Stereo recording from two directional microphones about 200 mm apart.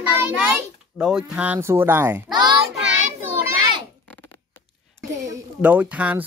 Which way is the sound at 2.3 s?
20° right (ahead or behind).